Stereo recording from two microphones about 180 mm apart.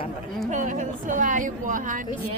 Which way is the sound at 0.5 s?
45° right (ahead or behind).